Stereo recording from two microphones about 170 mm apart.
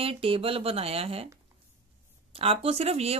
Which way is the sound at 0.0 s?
35° right (ahead or behind).